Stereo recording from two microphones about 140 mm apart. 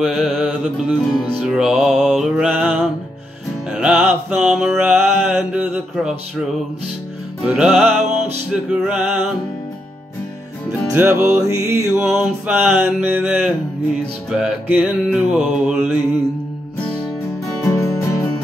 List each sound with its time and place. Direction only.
0.0 s music: centre (ahead or behind)
10.7 s music: 15° right (ahead or behind)
17.6 s music: 20° left (ahead or behind)